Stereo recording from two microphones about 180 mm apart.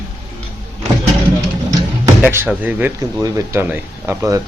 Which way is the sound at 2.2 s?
10° right (ahead or behind).